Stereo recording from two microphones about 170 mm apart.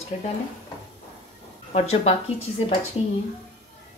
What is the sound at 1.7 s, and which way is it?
A woman's voice, 40° left (ahead or behind).